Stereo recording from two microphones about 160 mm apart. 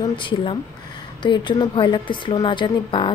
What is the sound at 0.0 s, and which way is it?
Speech, 30° left (ahead or behind).